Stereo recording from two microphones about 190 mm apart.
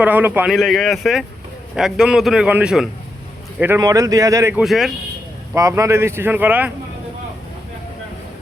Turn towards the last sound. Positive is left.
turn(degrees=-10)  # may be behind; listen again after turning